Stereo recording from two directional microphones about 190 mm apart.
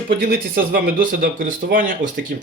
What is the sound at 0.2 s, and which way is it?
Speech, 50° right (ahead or behind).